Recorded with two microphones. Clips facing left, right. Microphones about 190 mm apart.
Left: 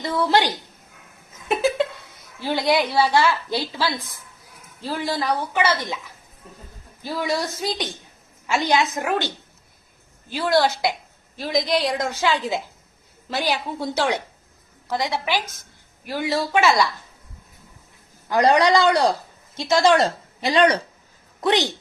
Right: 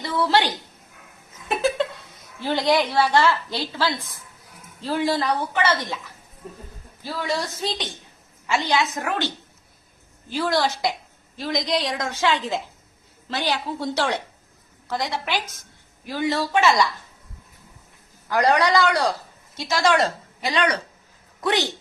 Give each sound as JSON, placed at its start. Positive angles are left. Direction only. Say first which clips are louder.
{"t": 0.2, "sound": "a woman's voice", "louder": "left 1 dB", "side_deg": 15}
{"t": 2.4, "sound": "a woman's voice", "louder": "even", "side_deg": 10}
{"t": 7.0, "sound": "a woman's voice", "louder": "left 2 dB", "side_deg": 15}
{"t": 10.3, "sound": "a woman's voice", "louder": "left 3 dB", "side_deg": 5}
{"t": 18.3, "sound": "speech", "louder": "left 3 dB", "side_deg": 20}
{"t": 20.4, "sound": "speech", "louder": "left 5 dB", "side_deg": 30}
{"t": 21.4, "sound": "speech", "louder": "left 3 dB", "side_deg": 20}